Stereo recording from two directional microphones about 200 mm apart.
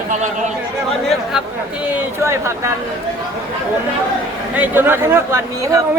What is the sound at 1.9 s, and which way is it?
Speech, 10° right (ahead or behind).